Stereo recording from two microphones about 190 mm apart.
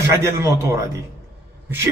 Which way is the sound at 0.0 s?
15° right (ahead or behind).